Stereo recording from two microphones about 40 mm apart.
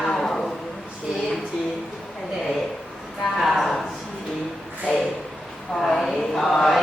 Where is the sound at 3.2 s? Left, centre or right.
Centre.